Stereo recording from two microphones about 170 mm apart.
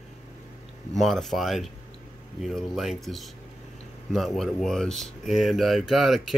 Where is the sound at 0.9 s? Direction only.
Centre (ahead or behind).